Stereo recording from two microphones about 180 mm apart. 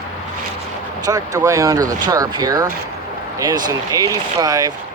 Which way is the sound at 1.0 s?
20° right (ahead or behind).